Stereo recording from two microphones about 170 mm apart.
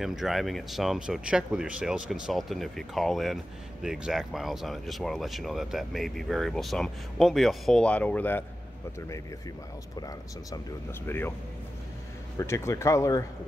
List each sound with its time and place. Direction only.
0.0 s speech: centre (ahead or behind)
9.9 s speech: 25° left (ahead or behind)
11.1 s speech: 10° left (ahead or behind)
12.4 s speech: 15° left (ahead or behind)